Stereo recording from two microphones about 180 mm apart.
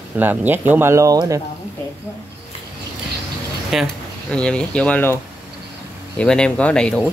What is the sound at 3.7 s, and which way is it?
Speech, 5° left (ahead or behind).